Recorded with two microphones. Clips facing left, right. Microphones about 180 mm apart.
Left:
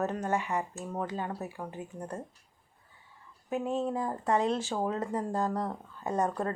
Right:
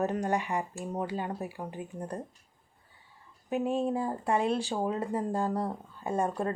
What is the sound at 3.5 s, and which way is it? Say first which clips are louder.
Speech: right 2 dB; 15° right (ahead or behind).